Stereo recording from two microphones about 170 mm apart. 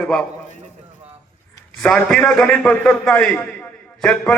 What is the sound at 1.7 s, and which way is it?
A man's voice, 5° left (ahead or behind).